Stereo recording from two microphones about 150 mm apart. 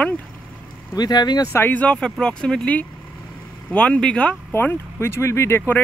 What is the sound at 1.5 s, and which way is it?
Speech, 15° left (ahead or behind).